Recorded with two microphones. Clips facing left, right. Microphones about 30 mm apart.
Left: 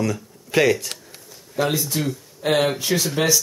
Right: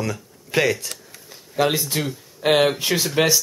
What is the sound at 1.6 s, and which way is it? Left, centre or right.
Speech, right.